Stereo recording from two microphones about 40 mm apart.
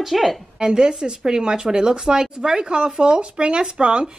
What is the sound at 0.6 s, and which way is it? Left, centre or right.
Speech, centre.